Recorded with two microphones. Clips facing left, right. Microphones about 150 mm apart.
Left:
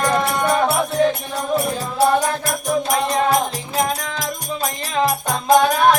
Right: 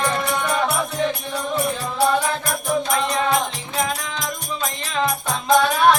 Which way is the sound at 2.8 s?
40° left (ahead or behind).